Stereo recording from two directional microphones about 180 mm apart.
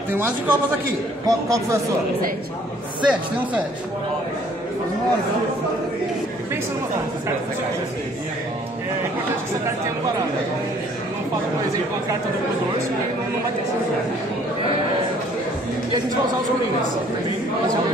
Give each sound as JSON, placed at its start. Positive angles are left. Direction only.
{"t": 0.1, "sound": "speech", "side_deg": -10}
{"t": 3.0, "sound": "speech", "side_deg": -5}